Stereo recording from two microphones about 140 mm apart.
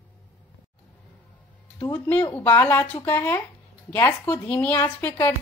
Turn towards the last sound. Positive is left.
turn(degrees=15)  # may be behind; listen again after turning